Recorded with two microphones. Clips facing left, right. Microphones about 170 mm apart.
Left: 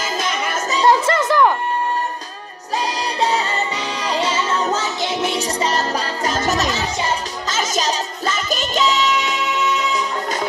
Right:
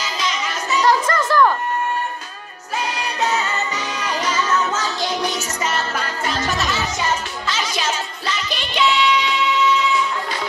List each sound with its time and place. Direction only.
0.0 s music: 50° left (ahead or behind)
0.7 s a sound: 25° left (ahead or behind)
2.8 s music: 35° left (ahead or behind)